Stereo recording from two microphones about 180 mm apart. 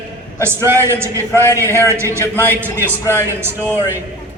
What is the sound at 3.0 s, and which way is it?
Speech, 15° left (ahead or behind).